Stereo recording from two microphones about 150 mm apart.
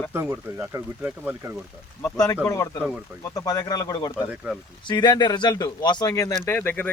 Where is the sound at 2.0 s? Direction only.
20° left (ahead or behind).